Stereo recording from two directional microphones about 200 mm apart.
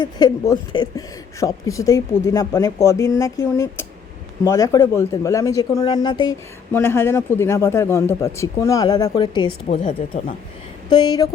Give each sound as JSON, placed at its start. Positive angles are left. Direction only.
{"t": 0.0, "sound": "a woman's voice", "side_deg": 20}
{"t": 9.6, "sound": "speech", "side_deg": 35}
{"t": 10.8, "sound": "speech", "side_deg": 20}